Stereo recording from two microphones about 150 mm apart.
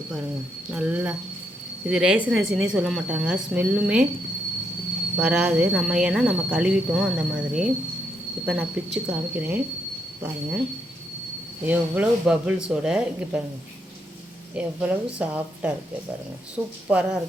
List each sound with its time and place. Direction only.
0.7 s a woman's voice: 10° right (ahead or behind)
5.1 s a woman's voice: 10° right (ahead or behind)
11.6 s a woman's voice: 10° right (ahead or behind)
14.5 s a woman's voice: 10° right (ahead or behind)